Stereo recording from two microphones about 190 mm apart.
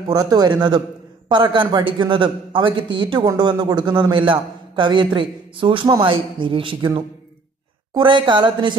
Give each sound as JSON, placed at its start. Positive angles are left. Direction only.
{"t": 0.1, "sound": "a man's voice", "side_deg": -20}